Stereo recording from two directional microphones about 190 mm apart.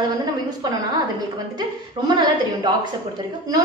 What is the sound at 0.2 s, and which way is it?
A woman's voice, 20° right (ahead or behind).